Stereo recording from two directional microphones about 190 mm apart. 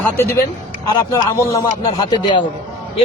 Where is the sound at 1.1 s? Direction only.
15° left (ahead or behind).